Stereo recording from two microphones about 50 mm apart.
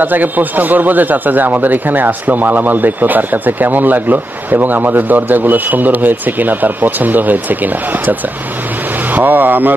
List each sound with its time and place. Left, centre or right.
0.0 s a man's voice: right